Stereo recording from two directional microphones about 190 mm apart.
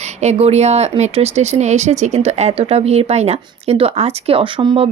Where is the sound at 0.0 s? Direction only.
35° right (ahead or behind).